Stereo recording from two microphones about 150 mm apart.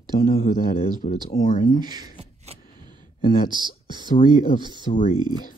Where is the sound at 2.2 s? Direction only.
45° right (ahead or behind).